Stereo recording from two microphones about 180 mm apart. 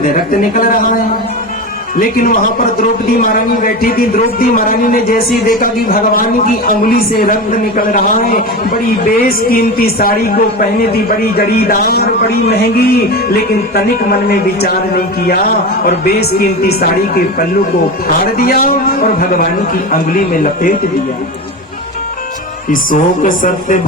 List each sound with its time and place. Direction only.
0.0 s a man's voice: 50° left (ahead or behind)
2.0 s a man's voice: 50° left (ahead or behind)
11.3 s music: 60° left (ahead or behind)
18.3 s a man's voice: 55° left (ahead or behind)
22.7 s a man's voice: 50° left (ahead or behind)